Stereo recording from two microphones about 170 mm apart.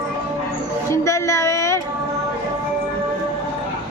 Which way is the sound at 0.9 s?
15° left (ahead or behind).